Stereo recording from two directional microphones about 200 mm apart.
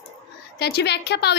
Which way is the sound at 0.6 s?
55° left (ahead or behind).